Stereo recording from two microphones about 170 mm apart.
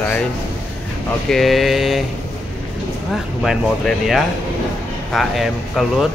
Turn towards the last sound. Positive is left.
turn(degrees=0)  # may be behind; listen again after turning